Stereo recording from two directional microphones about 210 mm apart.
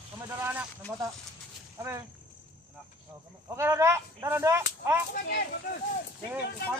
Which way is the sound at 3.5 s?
10° right (ahead or behind).